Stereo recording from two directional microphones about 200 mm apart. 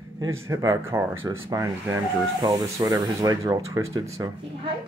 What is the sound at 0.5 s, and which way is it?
Speech, 15° right (ahead or behind).